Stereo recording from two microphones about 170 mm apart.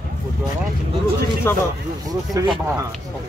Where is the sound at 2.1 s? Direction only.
25° right (ahead or behind).